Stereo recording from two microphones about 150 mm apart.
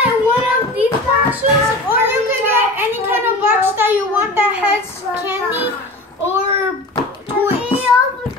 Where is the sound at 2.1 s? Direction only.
15° right (ahead or behind).